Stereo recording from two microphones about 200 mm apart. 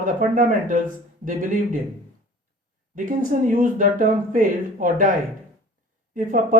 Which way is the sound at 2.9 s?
40° right (ahead or behind).